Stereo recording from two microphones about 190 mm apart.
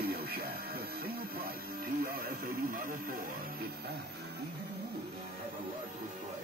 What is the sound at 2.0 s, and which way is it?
Radio, 50° right (ahead or behind).